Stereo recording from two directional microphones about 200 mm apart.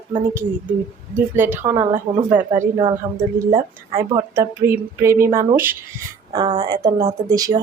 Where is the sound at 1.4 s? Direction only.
10° right (ahead or behind).